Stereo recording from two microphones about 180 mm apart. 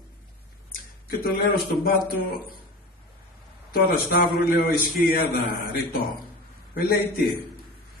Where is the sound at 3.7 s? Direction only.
55° left (ahead or behind).